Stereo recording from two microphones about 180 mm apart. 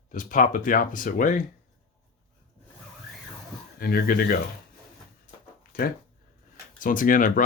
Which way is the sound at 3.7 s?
55° left (ahead or behind).